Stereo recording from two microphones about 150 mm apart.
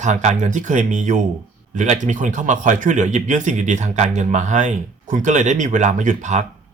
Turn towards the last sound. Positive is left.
turn(degrees=-55)  # may be behind; listen again after turning